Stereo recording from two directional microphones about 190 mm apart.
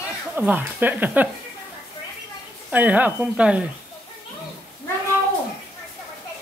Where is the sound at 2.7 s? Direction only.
10° right (ahead or behind).